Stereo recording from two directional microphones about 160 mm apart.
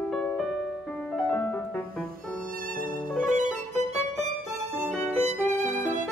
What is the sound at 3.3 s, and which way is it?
Music, 50° right (ahead or behind).